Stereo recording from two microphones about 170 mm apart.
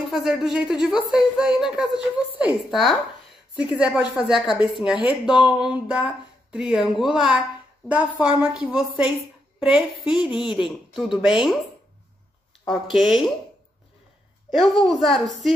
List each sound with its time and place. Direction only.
0.1 s a woman's voice: 5° right (ahead or behind)
12.6 s speech: centre (ahead or behind)
14.5 s a woman's voice: centre (ahead or behind)